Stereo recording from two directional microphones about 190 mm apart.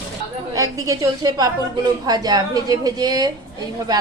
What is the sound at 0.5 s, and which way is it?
A woman's voice, 15° right (ahead or behind).